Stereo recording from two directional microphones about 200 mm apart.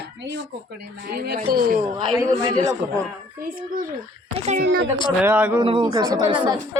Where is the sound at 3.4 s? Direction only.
45° right (ahead or behind).